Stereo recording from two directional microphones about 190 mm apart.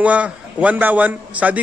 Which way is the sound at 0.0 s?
5° right (ahead or behind).